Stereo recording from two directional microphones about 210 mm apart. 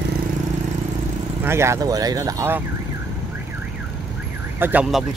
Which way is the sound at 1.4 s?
10° right (ahead or behind).